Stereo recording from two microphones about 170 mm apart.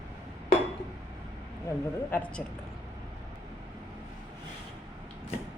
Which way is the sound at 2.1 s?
10° left (ahead or behind).